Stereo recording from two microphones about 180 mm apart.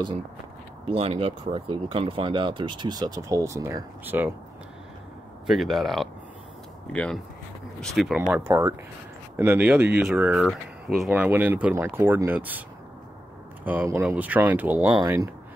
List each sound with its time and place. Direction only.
0.8 s speech: 30° right (ahead or behind); by 4.3 s 10° right (ahead or behind)
5.5 s speech: centre (ahead or behind)
13.7 s speech: 10° right (ahead or behind)